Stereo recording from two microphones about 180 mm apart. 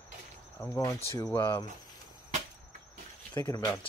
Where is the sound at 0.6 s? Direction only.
15° left (ahead or behind).